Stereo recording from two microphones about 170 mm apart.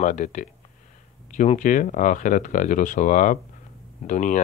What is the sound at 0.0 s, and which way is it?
Speech, 45° left (ahead or behind).